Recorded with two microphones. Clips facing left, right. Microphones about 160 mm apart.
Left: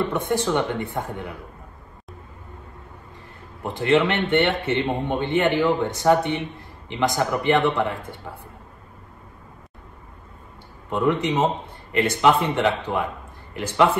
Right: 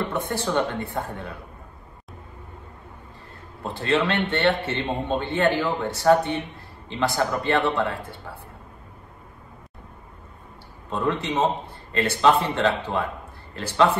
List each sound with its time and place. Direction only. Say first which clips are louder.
0.3 s a man's voice: left 2 dB; 15° left (ahead or behind)
3.6 s a man's voice: left 4 dB; 15° left (ahead or behind)
10.9 s a man's voice: left 4 dB; 15° left (ahead or behind)